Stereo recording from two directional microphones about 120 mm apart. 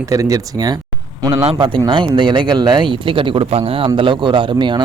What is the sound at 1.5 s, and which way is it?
Speech, 45° right (ahead or behind).